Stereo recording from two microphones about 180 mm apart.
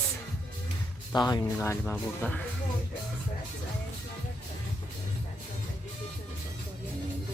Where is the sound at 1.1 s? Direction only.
25° left (ahead or behind).